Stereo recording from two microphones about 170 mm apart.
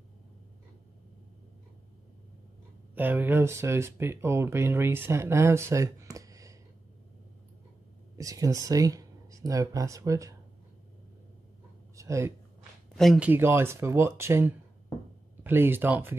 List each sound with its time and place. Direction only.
2.9 s speech: 10° right (ahead or behind)
8.2 s speech: 20° right (ahead or behind)
11.9 s a sound: 20° right (ahead or behind)
12.9 s speech: centre (ahead or behind)
13.3 s speech: 15° right (ahead or behind)